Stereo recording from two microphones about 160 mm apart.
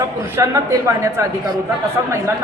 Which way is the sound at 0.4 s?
20° right (ahead or behind).